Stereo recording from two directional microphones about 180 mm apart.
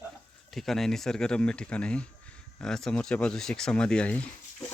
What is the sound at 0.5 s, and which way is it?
Speech, centre (ahead or behind).